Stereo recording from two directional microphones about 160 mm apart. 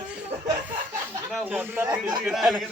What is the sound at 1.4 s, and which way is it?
Speech, 10° right (ahead or behind).